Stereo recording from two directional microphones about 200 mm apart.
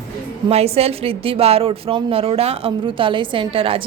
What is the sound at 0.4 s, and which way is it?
A woman's voice, 30° right (ahead or behind).